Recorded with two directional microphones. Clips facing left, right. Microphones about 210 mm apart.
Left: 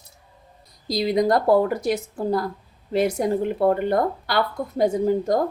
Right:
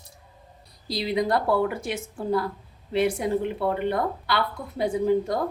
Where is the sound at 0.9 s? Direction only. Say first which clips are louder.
Left 5 dB; 40° left (ahead or behind).